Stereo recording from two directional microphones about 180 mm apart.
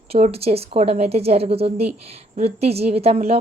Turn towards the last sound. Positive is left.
turn(degrees=-35)  # may be behind; listen again after turning